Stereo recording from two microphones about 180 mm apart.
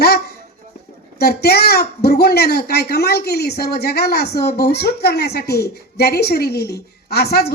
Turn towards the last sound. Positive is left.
turn(degrees=60)  # may be behind; listen again after turning